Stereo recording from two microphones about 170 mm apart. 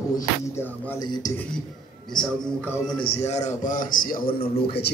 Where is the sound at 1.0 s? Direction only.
20° left (ahead or behind).